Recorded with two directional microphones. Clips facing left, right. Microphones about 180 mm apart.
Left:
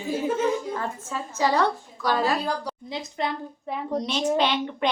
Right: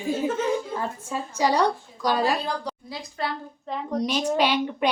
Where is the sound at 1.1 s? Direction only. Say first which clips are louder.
Right 1 dB; 15° right (ahead or behind).